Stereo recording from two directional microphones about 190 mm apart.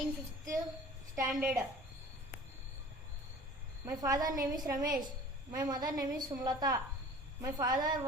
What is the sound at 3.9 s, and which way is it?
A woman's voice, 20° right (ahead or behind).